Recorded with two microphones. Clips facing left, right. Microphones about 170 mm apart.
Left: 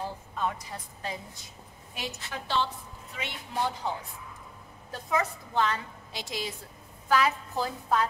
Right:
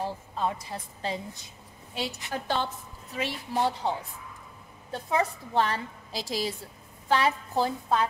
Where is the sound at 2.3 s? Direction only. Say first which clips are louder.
Right 1 dB; 50° right (ahead or behind).